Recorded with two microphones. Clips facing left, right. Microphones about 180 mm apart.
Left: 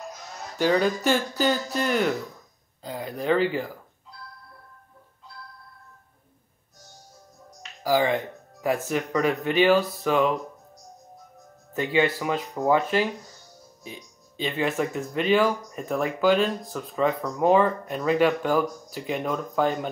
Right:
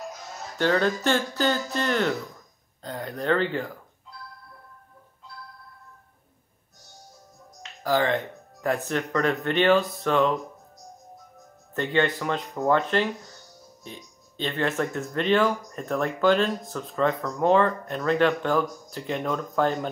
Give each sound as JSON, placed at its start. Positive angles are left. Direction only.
{"t": 0.6, "sound": "speech", "side_deg": 10}
{"t": 7.8, "sound": "speech", "side_deg": 10}
{"t": 11.7, "sound": "speech", "side_deg": 5}